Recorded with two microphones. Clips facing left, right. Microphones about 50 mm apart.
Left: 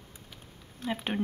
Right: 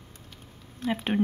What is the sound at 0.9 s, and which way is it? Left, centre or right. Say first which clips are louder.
Speech: right 5 dB; centre.